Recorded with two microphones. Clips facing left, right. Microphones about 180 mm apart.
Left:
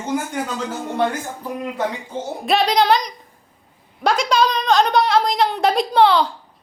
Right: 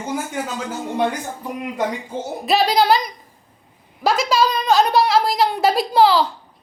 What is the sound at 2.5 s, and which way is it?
A woman's voice, 5° right (ahead or behind).